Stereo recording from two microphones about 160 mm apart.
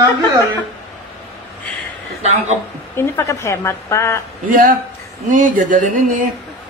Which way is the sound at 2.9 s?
15° left (ahead or behind).